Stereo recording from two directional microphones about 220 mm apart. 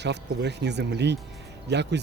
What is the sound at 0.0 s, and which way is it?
Speech, 50° right (ahead or behind).